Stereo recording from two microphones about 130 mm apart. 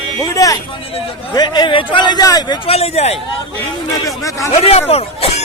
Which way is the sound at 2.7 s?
50° left (ahead or behind).